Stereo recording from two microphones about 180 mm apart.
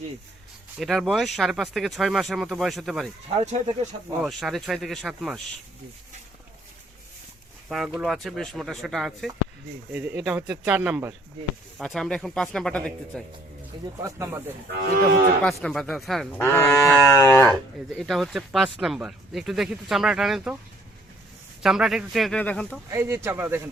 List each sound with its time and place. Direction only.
0.8 s speech: centre (ahead or behind)
3.4 s speech: 40° right (ahead or behind)
4.2 s speech: centre (ahead or behind)
7.7 s speech: centre (ahead or behind)
11.8 s speech: 5° left (ahead or behind)
14.0 s speech: 15° right (ahead or behind)
14.7 s cattle: 65° right (ahead or behind)
15.4 s speech: centre (ahead or behind)
16.4 s speech: 15° left (ahead or behind)
17.9 s speech: centre (ahead or behind)
21.6 s speech: centre (ahead or behind)
22.9 s speech: 15° right (ahead or behind)